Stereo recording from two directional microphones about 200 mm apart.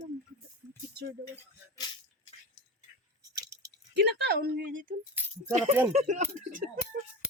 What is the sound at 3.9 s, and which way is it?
Speech, 55° right (ahead or behind).